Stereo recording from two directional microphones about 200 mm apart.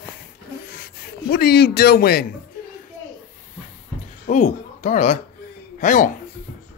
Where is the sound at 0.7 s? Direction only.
50° left (ahead or behind).